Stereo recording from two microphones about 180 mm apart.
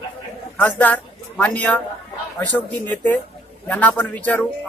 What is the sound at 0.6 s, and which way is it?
Speech, 10° left (ahead or behind).